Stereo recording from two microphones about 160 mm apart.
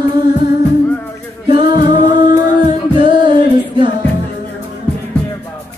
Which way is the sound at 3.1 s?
30° right (ahead or behind).